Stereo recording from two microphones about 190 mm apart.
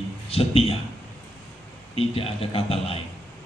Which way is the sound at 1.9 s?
30° left (ahead or behind).